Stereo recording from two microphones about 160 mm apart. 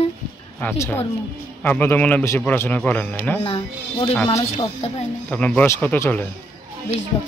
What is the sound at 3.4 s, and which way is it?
Speech, 35° left (ahead or behind).